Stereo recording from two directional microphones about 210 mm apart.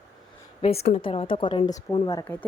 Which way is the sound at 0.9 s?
30° left (ahead or behind).